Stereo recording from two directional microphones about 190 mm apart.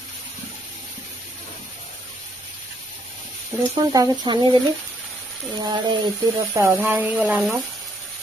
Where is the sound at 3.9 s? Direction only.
20° right (ahead or behind).